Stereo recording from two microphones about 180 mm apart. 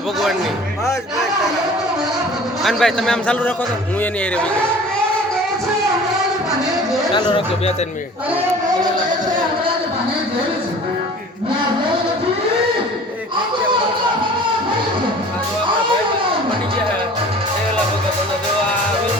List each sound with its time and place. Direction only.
2.6 s a man's voice: centre (ahead or behind)
7.1 s speech: 25° left (ahead or behind)